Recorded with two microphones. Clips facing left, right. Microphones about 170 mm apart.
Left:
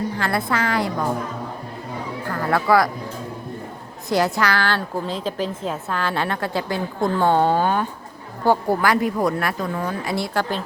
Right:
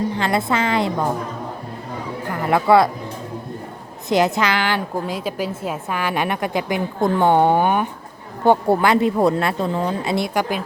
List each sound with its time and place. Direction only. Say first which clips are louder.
0.2 s a woman's voice: right 2 dB; 20° right (ahead or behind)
2.2 s speech: right 3 dB; 20° right (ahead or behind)
4.1 s a woman's voice: right 2 dB; 20° right (ahead or behind)